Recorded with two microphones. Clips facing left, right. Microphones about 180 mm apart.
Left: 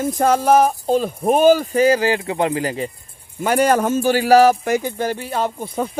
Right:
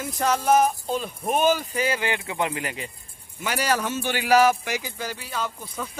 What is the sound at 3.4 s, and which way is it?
Speech, 50° left (ahead or behind).